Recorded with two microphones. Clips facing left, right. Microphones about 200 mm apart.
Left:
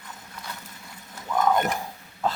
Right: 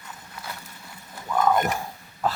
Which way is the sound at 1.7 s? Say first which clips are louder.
Right 1 dB; 20° left (ahead or behind).